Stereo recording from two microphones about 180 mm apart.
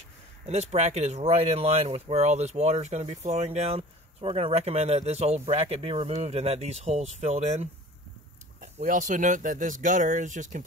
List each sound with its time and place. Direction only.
0.5 s speech: 40° right (ahead or behind)